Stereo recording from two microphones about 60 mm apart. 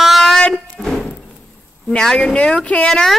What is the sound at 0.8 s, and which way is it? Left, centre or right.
Music, centre.